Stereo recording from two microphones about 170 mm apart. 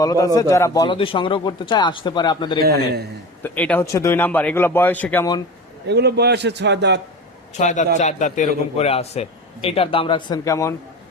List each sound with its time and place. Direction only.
0.0 s speech: 20° left (ahead or behind)
2.6 s a man's voice: 70° right (ahead or behind)
3.4 s speech: 10° left (ahead or behind)
5.9 s a man's voice: 75° right (ahead or behind)
7.5 s a man's voice: 45° left (ahead or behind); by 10.8 s 20° left (ahead or behind)